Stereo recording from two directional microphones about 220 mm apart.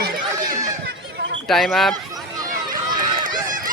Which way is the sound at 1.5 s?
Centre (ahead or behind).